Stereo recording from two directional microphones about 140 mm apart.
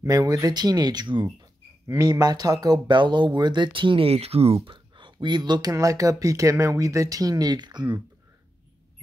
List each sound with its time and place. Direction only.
0.0 s speech: 25° right (ahead or behind); by 4.6 s 45° right (ahead or behind)
4.6 s speech: 35° right (ahead or behind)